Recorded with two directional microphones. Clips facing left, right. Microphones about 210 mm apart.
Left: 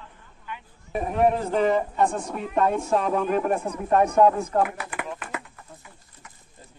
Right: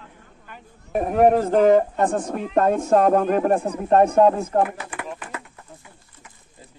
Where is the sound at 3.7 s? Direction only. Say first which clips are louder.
Right 4 dB; 35° right (ahead or behind).